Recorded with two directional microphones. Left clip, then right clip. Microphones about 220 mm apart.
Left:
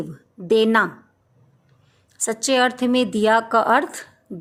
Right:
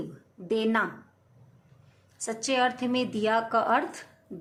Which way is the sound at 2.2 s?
45° left (ahead or behind).